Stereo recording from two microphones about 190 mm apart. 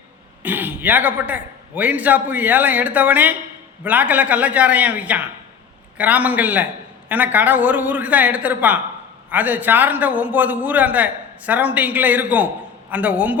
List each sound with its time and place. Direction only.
0.4 s a man's voice: 10° right (ahead or behind)